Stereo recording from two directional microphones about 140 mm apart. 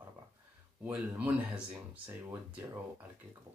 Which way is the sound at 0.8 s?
10° right (ahead or behind).